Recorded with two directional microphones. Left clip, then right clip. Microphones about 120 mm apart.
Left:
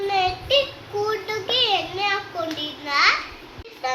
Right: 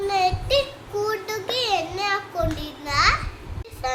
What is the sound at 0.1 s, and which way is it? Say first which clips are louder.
Child singing: left 1 dB; 25° right (ahead or behind).